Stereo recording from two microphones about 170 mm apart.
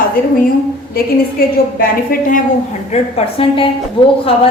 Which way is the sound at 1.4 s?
60° left (ahead or behind).